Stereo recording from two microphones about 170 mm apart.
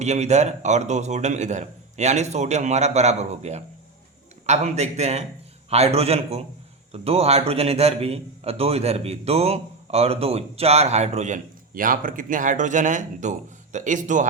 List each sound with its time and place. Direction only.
0.0 s a man's voice: 40° right (ahead or behind)